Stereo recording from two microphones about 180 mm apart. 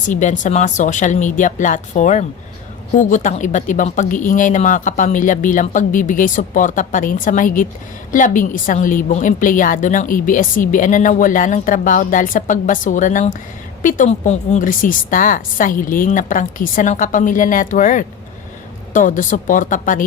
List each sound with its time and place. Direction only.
0.1 s a woman's voice: 45° left (ahead or behind)